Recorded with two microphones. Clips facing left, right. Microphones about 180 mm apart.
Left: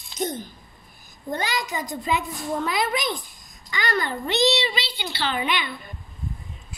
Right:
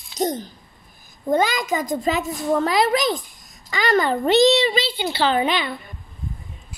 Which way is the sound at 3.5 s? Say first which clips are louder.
Right 6 dB; 90° right.